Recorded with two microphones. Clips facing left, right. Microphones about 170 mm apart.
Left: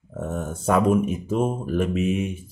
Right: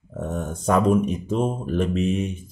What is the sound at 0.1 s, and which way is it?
Speech, 5° left (ahead or behind).